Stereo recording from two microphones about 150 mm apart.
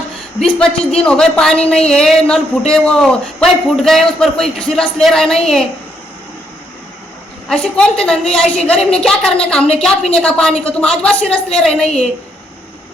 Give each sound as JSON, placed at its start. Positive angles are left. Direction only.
{"t": 0.3, "sound": "a woman's voice", "side_deg": 5}
{"t": 7.4, "sound": "a woman's voice", "side_deg": 5}